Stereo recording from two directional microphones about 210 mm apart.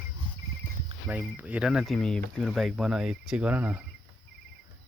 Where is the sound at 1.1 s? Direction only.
5° right (ahead or behind).